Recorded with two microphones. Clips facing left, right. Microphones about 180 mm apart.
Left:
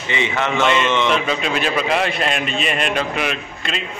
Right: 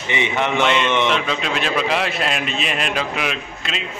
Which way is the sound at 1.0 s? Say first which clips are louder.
Left 1 dB; centre (ahead or behind).